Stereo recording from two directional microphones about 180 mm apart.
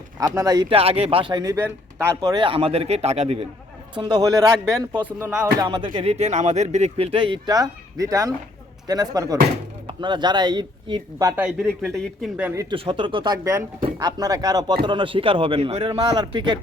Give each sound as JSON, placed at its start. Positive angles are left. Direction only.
{"t": 0.2, "sound": "speech", "side_deg": -20}
{"t": 2.3, "sound": "speech", "side_deg": -30}
{"t": 4.0, "sound": "speech", "side_deg": -20}
{"t": 5.2, "sound": "music", "side_deg": -10}
{"t": 5.5, "sound": "speech", "side_deg": -25}
{"t": 11.6, "sound": "speech", "side_deg": 5}
{"t": 12.4, "sound": "music", "side_deg": -10}
{"t": 12.7, "sound": "speech", "side_deg": -30}